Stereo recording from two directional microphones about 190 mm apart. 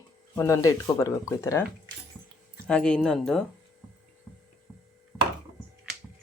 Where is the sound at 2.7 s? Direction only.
5° left (ahead or behind).